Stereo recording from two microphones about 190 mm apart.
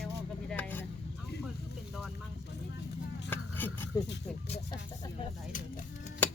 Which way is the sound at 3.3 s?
10° left (ahead or behind).